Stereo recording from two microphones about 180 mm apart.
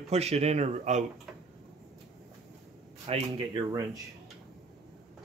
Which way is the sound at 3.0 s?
35° right (ahead or behind).